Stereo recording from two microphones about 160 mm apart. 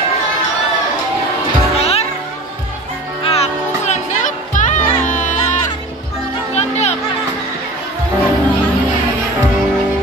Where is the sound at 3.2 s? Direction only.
40° left (ahead or behind).